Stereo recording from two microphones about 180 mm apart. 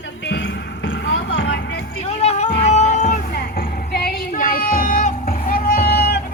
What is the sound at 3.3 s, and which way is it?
Music, 60° left (ahead or behind).